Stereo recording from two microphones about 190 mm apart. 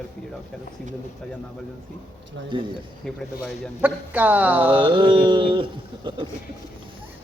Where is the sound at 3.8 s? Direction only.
10° right (ahead or behind).